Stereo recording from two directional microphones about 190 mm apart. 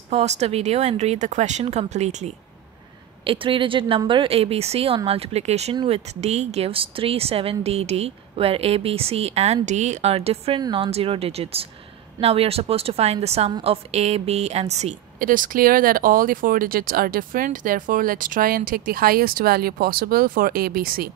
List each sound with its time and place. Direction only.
0.1 s a woman's voice: 35° right (ahead or behind); by 21.1 s 50° right (ahead or behind)